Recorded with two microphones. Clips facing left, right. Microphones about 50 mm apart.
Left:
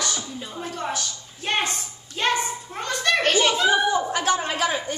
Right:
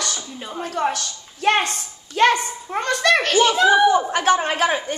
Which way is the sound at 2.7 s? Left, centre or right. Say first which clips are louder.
Right 6 dB; right.